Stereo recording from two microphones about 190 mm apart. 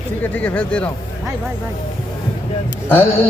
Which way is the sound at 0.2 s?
10° left (ahead or behind).